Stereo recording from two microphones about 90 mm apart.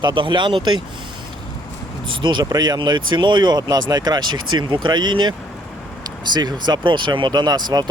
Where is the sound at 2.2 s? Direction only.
60° right (ahead or behind).